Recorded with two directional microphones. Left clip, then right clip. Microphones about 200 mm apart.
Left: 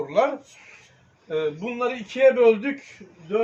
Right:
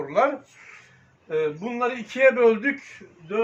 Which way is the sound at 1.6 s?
20° left (ahead or behind).